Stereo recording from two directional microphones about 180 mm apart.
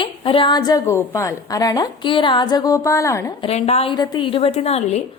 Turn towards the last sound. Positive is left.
turn(degrees=35)  # may be behind; listen again after turning